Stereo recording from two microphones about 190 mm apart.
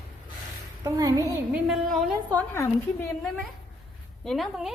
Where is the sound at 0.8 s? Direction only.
15° right (ahead or behind).